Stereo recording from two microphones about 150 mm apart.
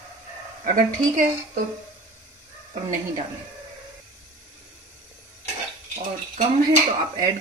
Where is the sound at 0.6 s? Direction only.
60° right (ahead or behind).